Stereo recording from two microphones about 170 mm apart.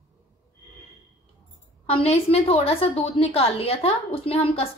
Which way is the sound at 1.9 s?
35° left (ahead or behind).